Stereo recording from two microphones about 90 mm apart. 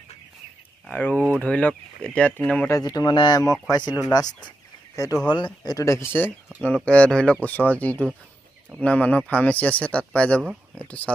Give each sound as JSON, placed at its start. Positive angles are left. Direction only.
{"t": 0.9, "sound": "speech", "side_deg": 20}
{"t": 2.8, "sound": "speech", "side_deg": 50}
{"t": 4.9, "sound": "speech", "side_deg": 40}
{"t": 5.3, "sound": "speech", "side_deg": 55}
{"t": 5.9, "sound": "speech", "side_deg": 30}
{"t": 6.6, "sound": "speech", "side_deg": 15}